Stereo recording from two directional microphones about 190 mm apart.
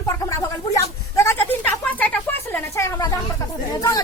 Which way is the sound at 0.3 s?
15° left (ahead or behind).